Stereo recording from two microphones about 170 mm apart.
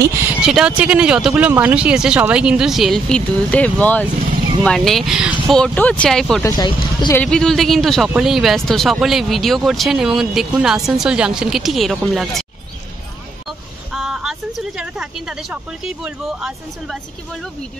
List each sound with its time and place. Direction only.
0.4 s speech: 5° right (ahead or behind)
6.4 s speech: 25° left (ahead or behind)
7.2 s speech: 5° left (ahead or behind)
13.9 s speech: centre (ahead or behind)